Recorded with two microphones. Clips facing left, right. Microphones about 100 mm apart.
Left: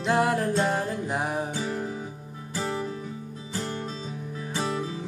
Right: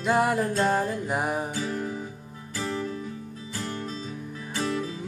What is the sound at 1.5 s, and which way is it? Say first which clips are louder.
Music: even; 30° left (ahead or behind).